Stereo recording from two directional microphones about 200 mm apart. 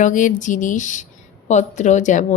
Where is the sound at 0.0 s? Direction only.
40° left (ahead or behind).